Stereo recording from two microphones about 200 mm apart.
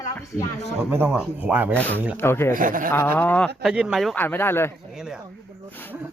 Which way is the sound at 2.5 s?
45° right (ahead or behind).